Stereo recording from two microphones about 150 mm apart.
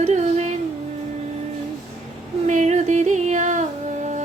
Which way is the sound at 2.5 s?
50° right (ahead or behind).